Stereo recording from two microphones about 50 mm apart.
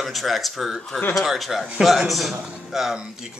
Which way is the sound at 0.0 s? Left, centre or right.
Centre.